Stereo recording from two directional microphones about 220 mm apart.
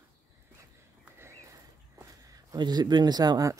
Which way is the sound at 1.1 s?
10° right (ahead or behind).